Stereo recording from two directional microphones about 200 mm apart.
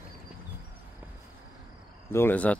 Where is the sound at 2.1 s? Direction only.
10° left (ahead or behind).